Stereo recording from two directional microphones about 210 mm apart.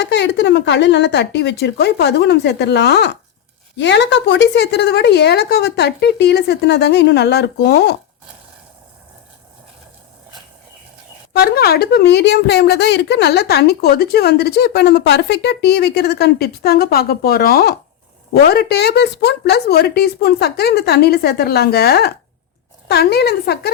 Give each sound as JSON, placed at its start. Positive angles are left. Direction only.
{"t": 0.0, "sound": "speech", "side_deg": 55}
{"t": 11.3, "sound": "speech", "side_deg": 50}